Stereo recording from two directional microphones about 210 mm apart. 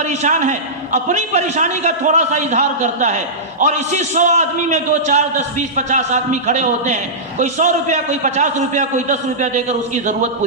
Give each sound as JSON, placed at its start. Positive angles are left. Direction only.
{"t": 0.0, "sound": "a man's voice", "side_deg": -35}